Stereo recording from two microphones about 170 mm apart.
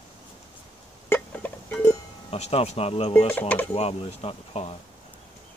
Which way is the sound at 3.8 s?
35° left (ahead or behind).